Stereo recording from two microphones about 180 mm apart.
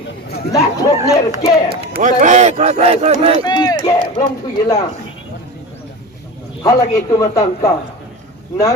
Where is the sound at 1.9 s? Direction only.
45° right (ahead or behind).